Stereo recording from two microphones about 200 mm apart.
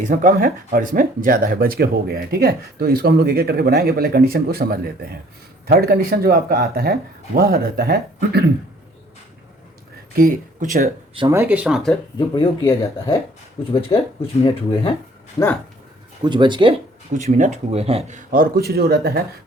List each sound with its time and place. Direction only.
0.1 s speech: 45° right (ahead or behind)
10.2 s speech: 45° right (ahead or behind)
11.3 s speech: 10° right (ahead or behind)
12.3 s speech: 25° left (ahead or behind)
16.2 s speech: 25° right (ahead or behind)
17.2 s speech: 35° right (ahead or behind)
18.3 s speech: 45° right (ahead or behind)